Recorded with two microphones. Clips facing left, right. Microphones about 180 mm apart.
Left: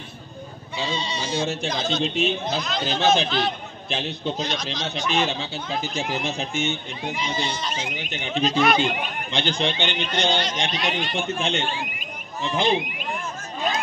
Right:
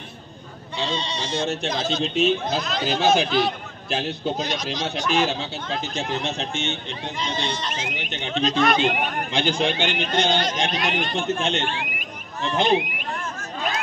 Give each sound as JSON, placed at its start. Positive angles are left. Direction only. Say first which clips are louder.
{"t": 0.7, "sound": "a man's voice", "louder": "right 1 dB", "side_deg": 5}
{"t": 9.3, "sound": "a man's voice", "louder": "right 1 dB", "side_deg": -5}
{"t": 9.9, "sound": "speech", "louder": "right 2 dB", "side_deg": -45}
{"t": 11.1, "sound": "speech", "louder": "right 1 dB", "side_deg": 0}